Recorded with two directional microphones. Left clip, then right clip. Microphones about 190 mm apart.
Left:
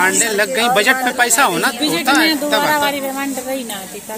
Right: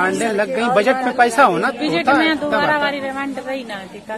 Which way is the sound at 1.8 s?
50° left (ahead or behind).